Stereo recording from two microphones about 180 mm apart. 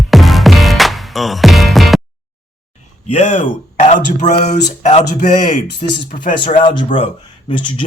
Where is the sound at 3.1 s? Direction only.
40° left (ahead or behind).